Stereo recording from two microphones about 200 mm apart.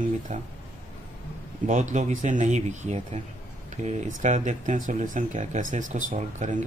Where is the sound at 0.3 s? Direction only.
35° right (ahead or behind).